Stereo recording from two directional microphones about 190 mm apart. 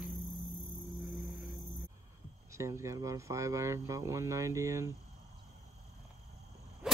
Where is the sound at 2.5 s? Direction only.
15° right (ahead or behind).